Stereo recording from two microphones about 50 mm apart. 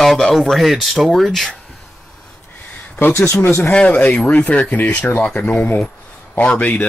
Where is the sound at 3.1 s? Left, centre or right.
Left.